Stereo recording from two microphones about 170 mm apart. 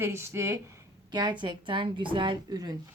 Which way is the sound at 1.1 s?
25° right (ahead or behind).